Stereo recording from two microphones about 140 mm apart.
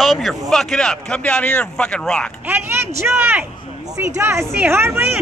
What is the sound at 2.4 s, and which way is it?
Speech, 15° right (ahead or behind).